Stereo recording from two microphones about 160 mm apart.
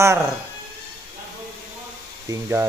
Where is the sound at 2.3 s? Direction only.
15° right (ahead or behind).